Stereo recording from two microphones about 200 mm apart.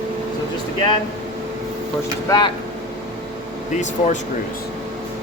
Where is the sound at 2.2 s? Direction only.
20° left (ahead or behind).